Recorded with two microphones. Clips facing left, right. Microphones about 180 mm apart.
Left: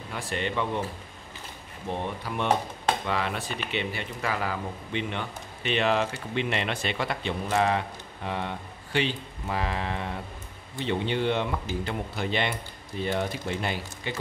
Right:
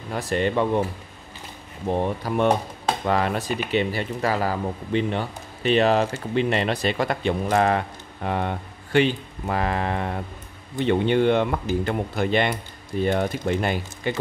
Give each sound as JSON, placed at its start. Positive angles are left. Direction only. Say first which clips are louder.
{"t": 0.1, "sound": "speech", "louder": "right 8 dB", "side_deg": -40}
{"t": 1.9, "sound": "speech", "louder": "right 8 dB", "side_deg": -40}